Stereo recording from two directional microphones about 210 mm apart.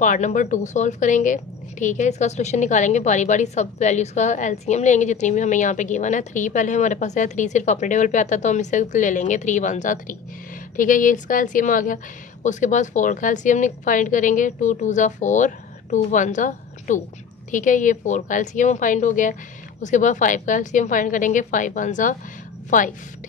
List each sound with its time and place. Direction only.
0.0 s a woman's voice: 35° left (ahead or behind)